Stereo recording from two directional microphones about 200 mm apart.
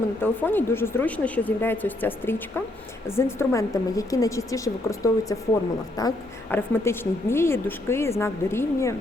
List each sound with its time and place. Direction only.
0.2 s a woman's voice: 10° left (ahead or behind)